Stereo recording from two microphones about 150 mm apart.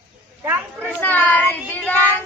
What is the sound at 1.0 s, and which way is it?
A child's voice, 10° left (ahead or behind).